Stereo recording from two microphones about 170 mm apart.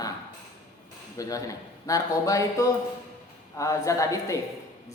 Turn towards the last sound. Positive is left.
turn(degrees=20)  # may be behind; listen again after turning